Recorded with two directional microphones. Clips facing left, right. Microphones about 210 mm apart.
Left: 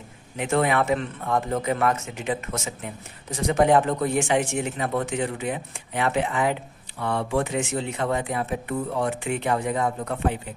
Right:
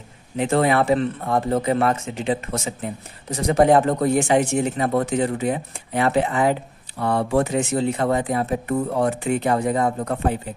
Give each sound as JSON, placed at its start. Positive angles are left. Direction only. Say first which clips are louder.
{"t": 0.4, "sound": "speech", "louder": "right 4 dB", "side_deg": -35}